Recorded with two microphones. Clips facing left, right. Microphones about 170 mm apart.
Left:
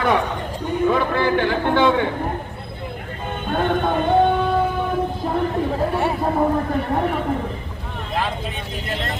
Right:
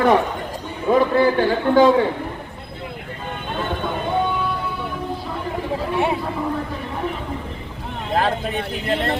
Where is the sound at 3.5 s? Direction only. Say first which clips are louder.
Left 6 dB; 55° left (ahead or behind).